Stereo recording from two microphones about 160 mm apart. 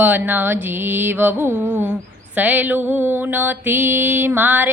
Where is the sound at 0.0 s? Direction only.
10° right (ahead or behind).